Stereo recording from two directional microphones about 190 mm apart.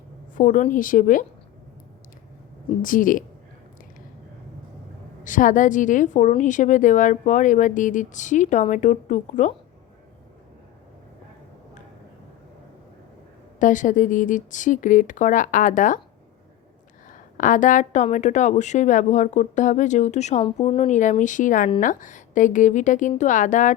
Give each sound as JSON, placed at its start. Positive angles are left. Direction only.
{"t": 0.3, "sound": "speech", "side_deg": 40}
{"t": 2.8, "sound": "speech", "side_deg": 45}
{"t": 5.2, "sound": "a woman's voice", "side_deg": 45}
{"t": 13.6, "sound": "speech", "side_deg": 40}
{"t": 17.1, "sound": "a woman's voice", "side_deg": 45}